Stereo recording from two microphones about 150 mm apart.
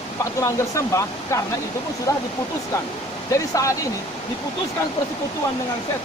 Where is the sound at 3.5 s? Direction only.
20° left (ahead or behind).